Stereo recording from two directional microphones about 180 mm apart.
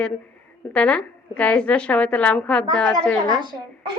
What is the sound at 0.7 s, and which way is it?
A woman's voice, 5° left (ahead or behind).